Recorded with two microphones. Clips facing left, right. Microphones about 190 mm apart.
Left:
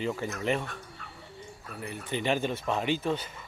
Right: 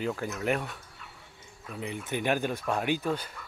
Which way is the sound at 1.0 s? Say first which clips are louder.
Left 3 dB; 50° left (ahead or behind).